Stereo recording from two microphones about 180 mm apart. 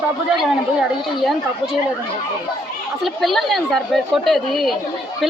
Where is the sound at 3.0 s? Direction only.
Centre (ahead or behind).